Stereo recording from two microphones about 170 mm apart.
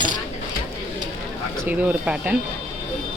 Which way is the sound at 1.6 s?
10° right (ahead or behind).